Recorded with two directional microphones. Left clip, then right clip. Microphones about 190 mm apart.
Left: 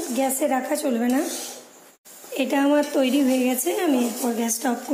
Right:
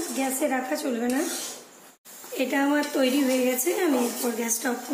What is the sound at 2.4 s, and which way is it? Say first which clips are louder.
A woman's voice: left 4 dB; 35° left (ahead or behind).